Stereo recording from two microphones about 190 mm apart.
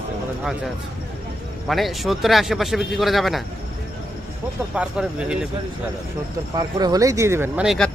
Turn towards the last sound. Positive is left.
turn(degrees=0)  # may be behind; listen again after turning